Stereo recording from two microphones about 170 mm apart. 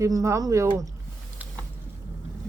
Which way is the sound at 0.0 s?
20° right (ahead or behind).